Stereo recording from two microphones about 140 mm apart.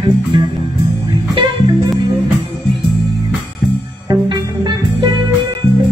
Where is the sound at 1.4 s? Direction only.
30° right (ahead or behind).